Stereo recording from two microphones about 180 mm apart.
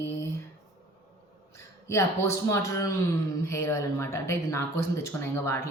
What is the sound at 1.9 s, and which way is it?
A woman's voice, 15° left (ahead or behind).